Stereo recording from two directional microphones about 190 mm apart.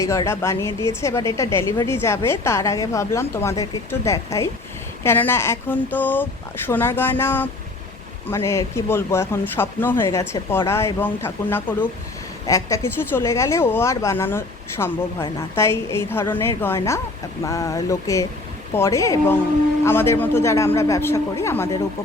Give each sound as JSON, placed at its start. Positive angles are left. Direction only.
{"t": 0.0, "sound": "a woman's voice", "side_deg": 15}